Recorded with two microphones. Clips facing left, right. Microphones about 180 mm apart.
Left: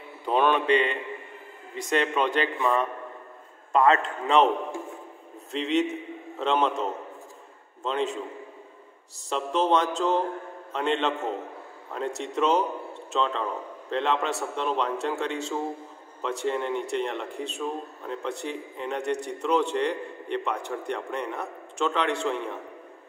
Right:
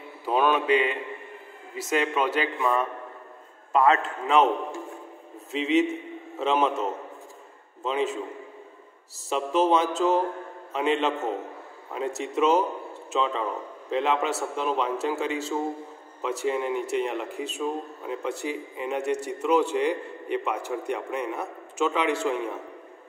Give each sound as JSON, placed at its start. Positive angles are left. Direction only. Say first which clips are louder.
{"t": 0.2, "sound": "mantra", "louder": "even", "side_deg": -5}
{"t": 1.8, "sound": "speech", "louder": "even", "side_deg": -5}
{"t": 5.5, "sound": "speech", "louder": "right 2 dB", "side_deg": -5}
{"t": 9.3, "sound": "speech", "louder": "right 2 dB", "side_deg": -5}